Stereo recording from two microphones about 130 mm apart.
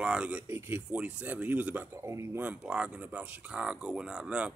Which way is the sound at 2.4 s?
10° right (ahead or behind).